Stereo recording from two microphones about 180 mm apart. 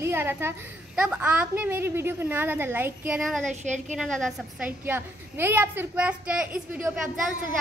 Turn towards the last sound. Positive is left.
turn(degrees=-5)  # may be behind; listen again after turning